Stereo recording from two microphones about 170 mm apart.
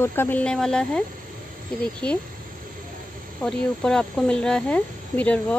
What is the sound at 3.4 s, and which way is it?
Speech, 5° left (ahead or behind).